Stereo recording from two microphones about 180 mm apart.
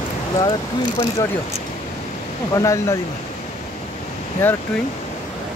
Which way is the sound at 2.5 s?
15° left (ahead or behind).